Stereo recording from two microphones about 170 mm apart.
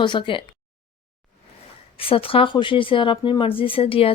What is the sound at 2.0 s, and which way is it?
Speech, 35° left (ahead or behind).